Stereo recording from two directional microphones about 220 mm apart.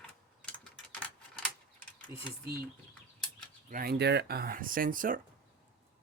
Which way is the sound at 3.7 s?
40° right (ahead or behind).